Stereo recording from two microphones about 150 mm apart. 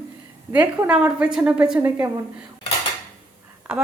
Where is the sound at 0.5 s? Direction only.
10° right (ahead or behind).